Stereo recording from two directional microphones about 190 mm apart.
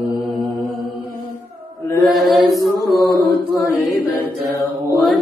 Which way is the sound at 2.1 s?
Centre (ahead or behind).